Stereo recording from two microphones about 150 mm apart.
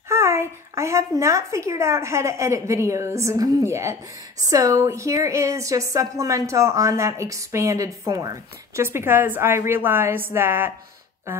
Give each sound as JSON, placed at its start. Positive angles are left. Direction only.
{"t": 0.1, "sound": "a woman's voice", "side_deg": -20}